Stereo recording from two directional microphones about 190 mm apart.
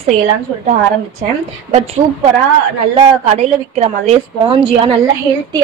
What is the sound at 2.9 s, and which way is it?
A woman's voice, 30° right (ahead or behind).